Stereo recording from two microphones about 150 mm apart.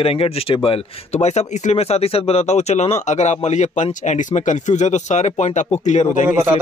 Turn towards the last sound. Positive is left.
turn(degrees=-15)  # may be behind; listen again after turning